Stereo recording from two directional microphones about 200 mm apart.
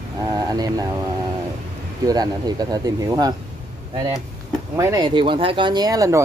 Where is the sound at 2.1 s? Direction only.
20° right (ahead or behind).